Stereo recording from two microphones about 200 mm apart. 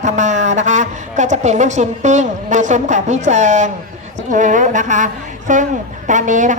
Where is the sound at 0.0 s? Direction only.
35° right (ahead or behind).